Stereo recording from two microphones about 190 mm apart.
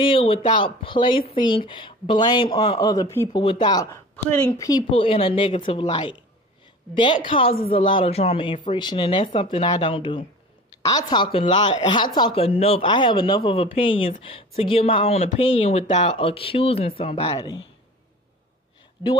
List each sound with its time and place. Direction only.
0.0 s speech: 30° left (ahead or behind)
7.2 s speech: 25° left (ahead or behind)